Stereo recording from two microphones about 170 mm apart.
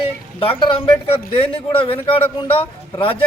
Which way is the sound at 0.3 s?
30° left (ahead or behind).